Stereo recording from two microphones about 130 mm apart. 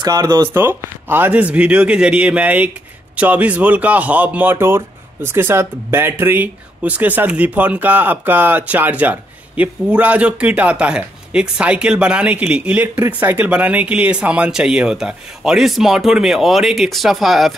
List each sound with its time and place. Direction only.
0.0 s speech: 30° right (ahead or behind)
0.5 s speech: 20° right (ahead or behind); by 17.6 s centre (ahead or behind)